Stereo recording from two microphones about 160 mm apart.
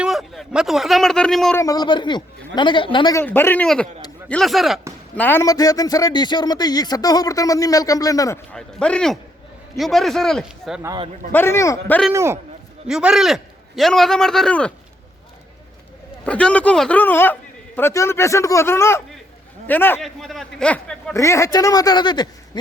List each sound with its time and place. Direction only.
0.0 s a man's voice: centre (ahead or behind)
1.5 s a man's voice: 20° left (ahead or behind)
3.2 s a man's voice: 15° left (ahead or behind)
5.1 s a man's voice: 10° left (ahead or behind)
8.5 s a man's voice: 5° left (ahead or behind)
10.8 s a man's voice: 30° right (ahead or behind)
11.3 s a man's voice: 15° left (ahead or behind)
11.9 s a man's voice: 5° left (ahead or behind)
12.1 s a man's voice: 15° right (ahead or behind)
12.9 s a man's voice: 5° right (ahead or behind)
16.2 s a man's voice: 5° left (ahead or behind)
20.0 s a man's voice: centre (ahead or behind); by 22.3 s 25° left (ahead or behind)